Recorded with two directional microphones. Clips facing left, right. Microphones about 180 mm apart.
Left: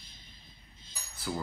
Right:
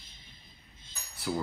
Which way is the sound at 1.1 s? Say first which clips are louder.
Right 3 dB; centre (ahead or behind).